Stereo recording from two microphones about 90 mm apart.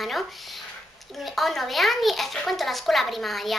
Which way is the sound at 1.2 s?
Centre (ahead or behind).